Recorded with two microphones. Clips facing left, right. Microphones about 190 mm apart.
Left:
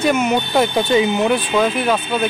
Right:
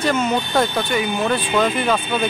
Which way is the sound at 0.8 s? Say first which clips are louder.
Left 5 dB; 25° left (ahead or behind).